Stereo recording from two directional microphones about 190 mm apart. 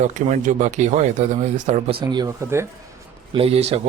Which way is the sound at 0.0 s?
40° right (ahead or behind).